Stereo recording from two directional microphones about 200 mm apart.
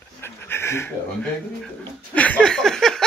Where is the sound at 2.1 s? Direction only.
5° left (ahead or behind).